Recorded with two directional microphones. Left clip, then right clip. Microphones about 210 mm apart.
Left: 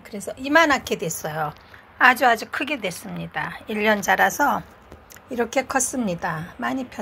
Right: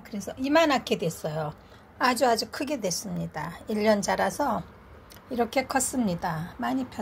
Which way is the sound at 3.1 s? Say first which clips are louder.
Left 6 dB; 10° right (ahead or behind).